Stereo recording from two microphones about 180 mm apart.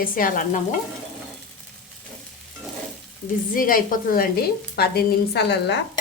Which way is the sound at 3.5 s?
50° left (ahead or behind).